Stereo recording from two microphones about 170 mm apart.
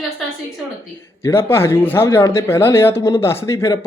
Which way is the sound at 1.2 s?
15° left (ahead or behind).